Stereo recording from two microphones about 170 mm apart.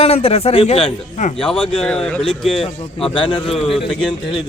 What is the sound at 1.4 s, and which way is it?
Speech, 5° left (ahead or behind).